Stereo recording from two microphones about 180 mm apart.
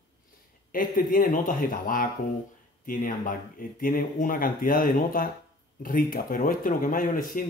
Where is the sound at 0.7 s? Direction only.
50° left (ahead or behind).